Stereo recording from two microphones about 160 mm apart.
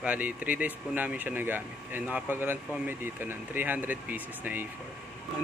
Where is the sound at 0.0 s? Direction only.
10° right (ahead or behind).